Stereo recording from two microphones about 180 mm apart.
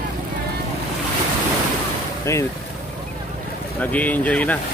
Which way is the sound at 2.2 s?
15° left (ahead or behind).